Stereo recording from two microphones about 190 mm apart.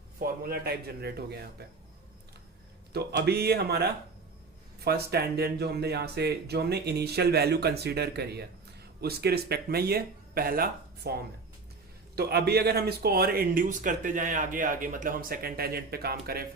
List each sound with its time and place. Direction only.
0.2 s speech: 55° right (ahead or behind)
2.9 s speech: 60° right (ahead or behind)